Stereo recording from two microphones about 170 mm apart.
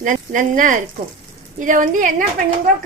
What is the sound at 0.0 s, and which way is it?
A woman's voice, 50° right (ahead or behind).